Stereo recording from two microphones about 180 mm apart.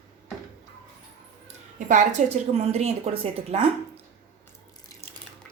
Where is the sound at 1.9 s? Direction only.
40° right (ahead or behind).